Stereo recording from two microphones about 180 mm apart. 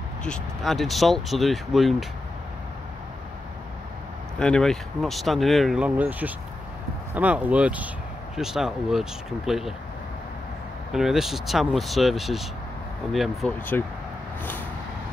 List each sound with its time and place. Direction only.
0.2 s speech: 5° left (ahead or behind)
4.4 s speech: 5° left (ahead or behind)
10.9 s speech: centre (ahead or behind)
13.7 s speech: 10° left (ahead or behind)